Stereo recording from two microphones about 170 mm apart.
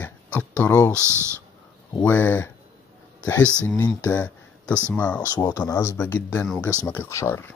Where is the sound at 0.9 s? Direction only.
15° right (ahead or behind).